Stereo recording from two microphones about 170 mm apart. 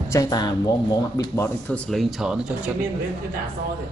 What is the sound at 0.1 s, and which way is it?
Speech, 20° left (ahead or behind).